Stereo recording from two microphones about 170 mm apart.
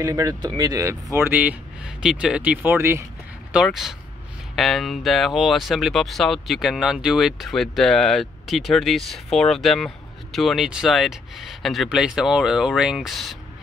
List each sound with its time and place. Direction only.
0.0 s speech: 20° right (ahead or behind)
3.5 s speech: centre (ahead or behind)